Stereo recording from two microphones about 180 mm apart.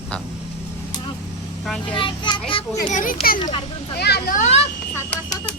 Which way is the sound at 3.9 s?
65° left (ahead or behind).